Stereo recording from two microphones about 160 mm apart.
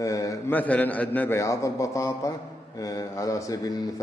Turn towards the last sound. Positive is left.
turn(degrees=20)  # may be behind; listen again after turning